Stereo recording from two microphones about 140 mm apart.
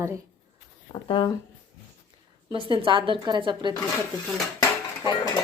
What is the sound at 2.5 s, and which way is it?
A woman's voice, 35° right (ahead or behind).